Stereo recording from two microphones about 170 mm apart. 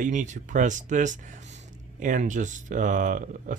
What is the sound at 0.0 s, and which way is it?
Speech, 45° right (ahead or behind).